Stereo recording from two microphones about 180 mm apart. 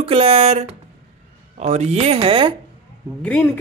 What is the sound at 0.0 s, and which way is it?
Speech, 30° right (ahead or behind).